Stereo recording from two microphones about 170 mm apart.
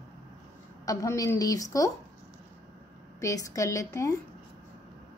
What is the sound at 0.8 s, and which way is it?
A woman's voice, 20° left (ahead or behind).